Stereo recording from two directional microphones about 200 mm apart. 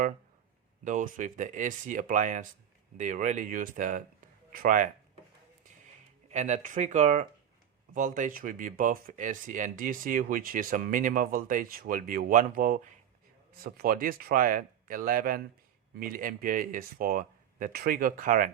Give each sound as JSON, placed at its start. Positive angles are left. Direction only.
{"t": 0.9, "sound": "speech", "side_deg": -40}
{"t": 6.3, "sound": "speech", "side_deg": -35}